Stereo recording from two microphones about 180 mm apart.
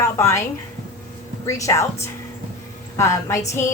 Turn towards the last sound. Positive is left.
turn(degrees=15)  # may be behind; listen again after turning